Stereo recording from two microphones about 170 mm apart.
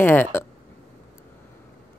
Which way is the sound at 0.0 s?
10° left (ahead or behind).